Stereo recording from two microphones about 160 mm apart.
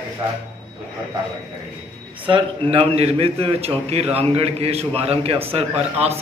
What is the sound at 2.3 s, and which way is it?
A man's voice, 30° right (ahead or behind).